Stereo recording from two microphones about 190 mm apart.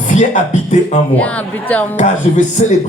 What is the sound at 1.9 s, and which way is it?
Speech, 40° left (ahead or behind).